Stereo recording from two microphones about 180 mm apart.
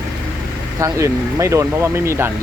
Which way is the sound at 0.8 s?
15° right (ahead or behind).